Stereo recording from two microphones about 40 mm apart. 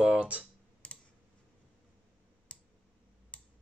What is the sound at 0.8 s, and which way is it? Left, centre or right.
Computer keyboard, left.